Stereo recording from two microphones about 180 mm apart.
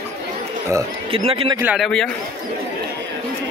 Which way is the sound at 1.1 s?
30° right (ahead or behind).